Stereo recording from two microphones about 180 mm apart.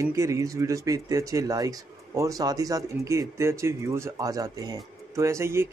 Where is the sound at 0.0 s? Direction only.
15° right (ahead or behind).